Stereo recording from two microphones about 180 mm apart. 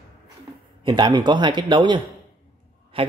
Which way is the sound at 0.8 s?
25° right (ahead or behind).